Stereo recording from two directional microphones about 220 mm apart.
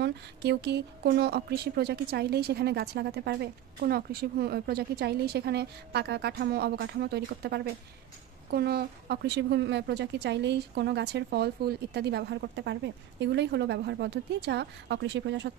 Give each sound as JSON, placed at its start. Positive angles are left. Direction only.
{"t": 0.0, "sound": "speech", "side_deg": -50}